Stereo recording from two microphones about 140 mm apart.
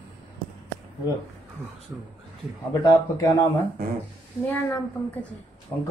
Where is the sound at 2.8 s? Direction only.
30° left (ahead or behind).